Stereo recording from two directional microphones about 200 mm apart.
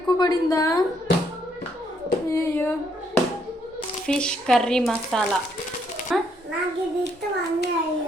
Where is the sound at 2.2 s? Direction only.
15° left (ahead or behind).